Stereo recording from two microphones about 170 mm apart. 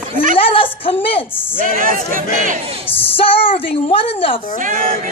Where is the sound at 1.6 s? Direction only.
55° right (ahead or behind).